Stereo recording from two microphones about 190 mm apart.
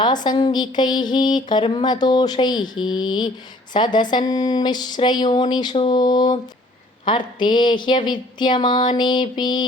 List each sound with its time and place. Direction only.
0.0 s speech: 25° left (ahead or behind)